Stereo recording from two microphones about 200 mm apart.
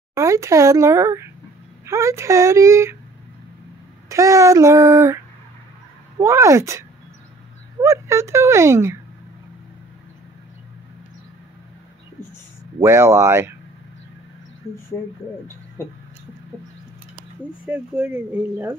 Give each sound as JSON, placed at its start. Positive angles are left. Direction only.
{"t": 0.1, "sound": "speech", "side_deg": -15}
{"t": 4.1, "sound": "speech", "side_deg": -15}
{"t": 7.8, "sound": "speech", "side_deg": -15}
{"t": 12.8, "sound": "speech", "side_deg": -15}
{"t": 14.6, "sound": "speech", "side_deg": 30}
{"t": 15.8, "sound": "a sound", "side_deg": 10}
{"t": 17.6, "sound": "speech", "side_deg": -5}